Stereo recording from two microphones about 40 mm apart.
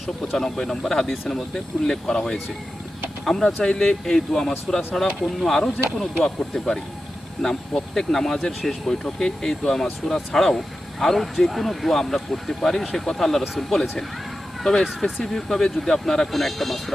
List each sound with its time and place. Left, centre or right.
0.3 s speech: centre
5.2 s speech: centre